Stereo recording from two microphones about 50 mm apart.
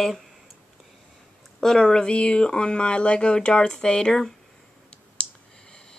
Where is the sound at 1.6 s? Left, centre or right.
Centre.